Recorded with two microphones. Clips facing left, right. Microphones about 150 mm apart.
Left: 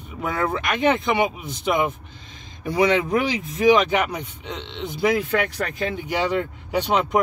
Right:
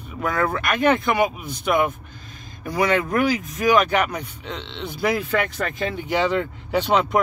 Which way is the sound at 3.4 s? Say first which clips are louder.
Left 2 dB; 25° left (ahead or behind).